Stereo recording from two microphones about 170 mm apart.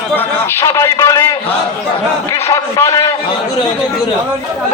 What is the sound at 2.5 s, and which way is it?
Speech, 20° left (ahead or behind).